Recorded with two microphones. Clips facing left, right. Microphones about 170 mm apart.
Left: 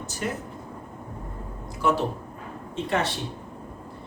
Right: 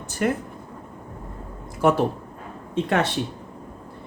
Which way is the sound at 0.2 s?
55° right (ahead or behind).